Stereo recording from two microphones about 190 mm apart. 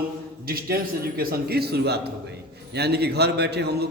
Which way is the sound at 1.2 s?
55° right (ahead or behind).